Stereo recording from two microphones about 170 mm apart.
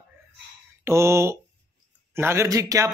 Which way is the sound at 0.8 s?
15° right (ahead or behind).